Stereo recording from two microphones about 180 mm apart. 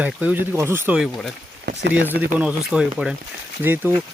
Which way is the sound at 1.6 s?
75° right (ahead or behind).